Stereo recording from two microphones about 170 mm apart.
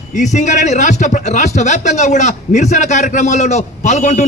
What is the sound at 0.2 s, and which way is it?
A man's voice, 45° left (ahead or behind).